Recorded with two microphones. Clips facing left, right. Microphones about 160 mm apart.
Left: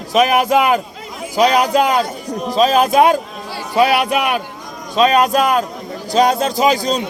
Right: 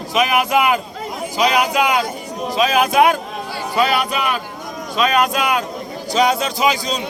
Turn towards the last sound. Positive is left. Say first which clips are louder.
# left 4 dB
turn(degrees=45)  # may be behind; listen again after turning